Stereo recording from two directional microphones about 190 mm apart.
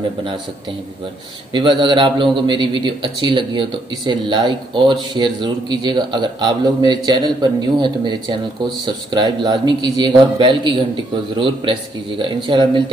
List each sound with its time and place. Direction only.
1.5 s speech: 25° right (ahead or behind)